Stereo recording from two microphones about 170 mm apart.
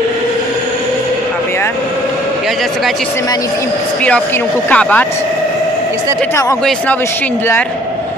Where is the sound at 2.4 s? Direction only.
Centre (ahead or behind).